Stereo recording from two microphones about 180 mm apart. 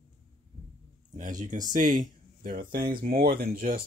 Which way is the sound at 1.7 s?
50° right (ahead or behind).